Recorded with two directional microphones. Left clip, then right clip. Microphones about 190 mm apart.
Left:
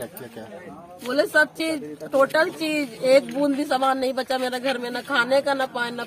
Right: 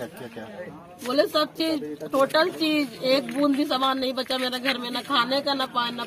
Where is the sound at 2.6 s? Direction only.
10° left (ahead or behind).